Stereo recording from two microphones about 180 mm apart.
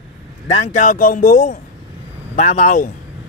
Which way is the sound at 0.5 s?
40° left (ahead or behind).